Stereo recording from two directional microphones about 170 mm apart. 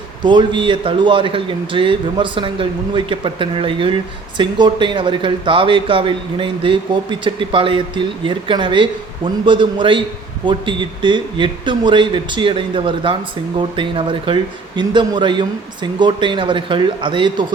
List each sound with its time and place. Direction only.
0.3 s speech: 30° right (ahead or behind)